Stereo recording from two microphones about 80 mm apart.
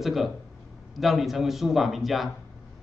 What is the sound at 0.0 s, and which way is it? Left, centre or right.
Speech, centre.